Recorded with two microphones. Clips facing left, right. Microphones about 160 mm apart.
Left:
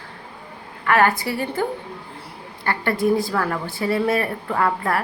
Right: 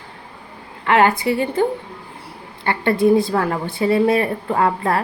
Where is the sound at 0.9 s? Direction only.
20° right (ahead or behind).